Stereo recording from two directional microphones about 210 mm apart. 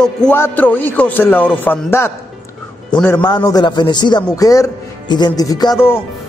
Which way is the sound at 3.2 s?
20° left (ahead or behind).